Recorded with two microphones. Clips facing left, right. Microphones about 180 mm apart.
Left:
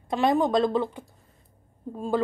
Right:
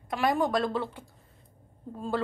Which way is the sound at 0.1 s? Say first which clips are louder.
Left 4 dB; 25° left (ahead or behind).